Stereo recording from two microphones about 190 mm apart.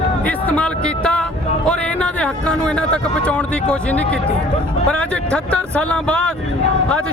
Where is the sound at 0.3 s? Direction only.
10° left (ahead or behind).